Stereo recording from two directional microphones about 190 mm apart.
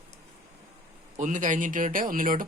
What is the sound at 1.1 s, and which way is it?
Speech, 40° right (ahead or behind).